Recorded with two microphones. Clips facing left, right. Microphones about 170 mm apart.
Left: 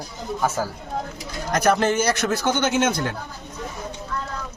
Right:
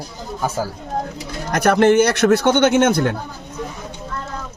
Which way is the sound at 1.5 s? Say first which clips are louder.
Right 6 dB; 60° right (ahead or behind).